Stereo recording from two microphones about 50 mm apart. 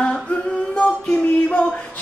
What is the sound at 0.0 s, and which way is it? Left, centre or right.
Singing, centre.